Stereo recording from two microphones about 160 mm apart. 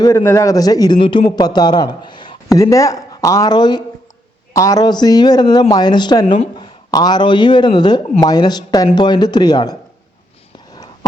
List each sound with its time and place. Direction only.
0.0 s a man's voice: 20° left (ahead or behind)